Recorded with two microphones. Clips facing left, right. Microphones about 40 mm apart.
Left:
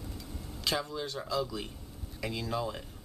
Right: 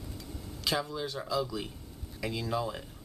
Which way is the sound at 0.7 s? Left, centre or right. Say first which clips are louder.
Right 1 dB; centre.